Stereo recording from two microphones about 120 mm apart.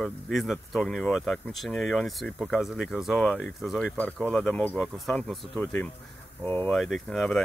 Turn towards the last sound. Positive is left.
turn(degrees=0)  # may be behind; listen again after turning